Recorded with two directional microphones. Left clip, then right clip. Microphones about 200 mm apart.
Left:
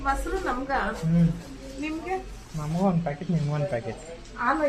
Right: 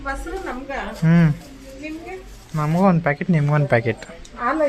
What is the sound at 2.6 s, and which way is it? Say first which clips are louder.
Speech: right 9 dB; 55° right (ahead or behind).